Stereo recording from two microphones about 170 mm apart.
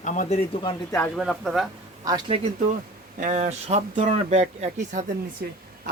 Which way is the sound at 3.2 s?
45° right (ahead or behind).